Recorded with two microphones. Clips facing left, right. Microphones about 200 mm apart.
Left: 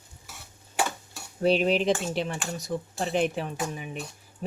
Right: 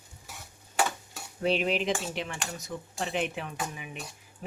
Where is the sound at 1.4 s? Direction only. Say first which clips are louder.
Left 5 dB; 35° left (ahead or behind).